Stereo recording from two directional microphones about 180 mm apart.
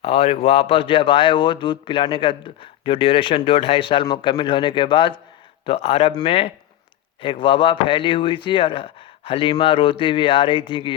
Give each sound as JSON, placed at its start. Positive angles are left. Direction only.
{"t": 0.0, "sound": "speech", "side_deg": 35}